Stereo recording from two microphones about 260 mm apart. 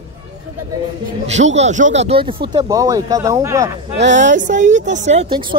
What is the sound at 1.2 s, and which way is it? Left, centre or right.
Speech, right.